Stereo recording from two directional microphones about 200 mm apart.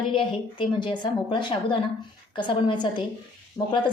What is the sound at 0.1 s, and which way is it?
A woman's voice, 25° left (ahead or behind).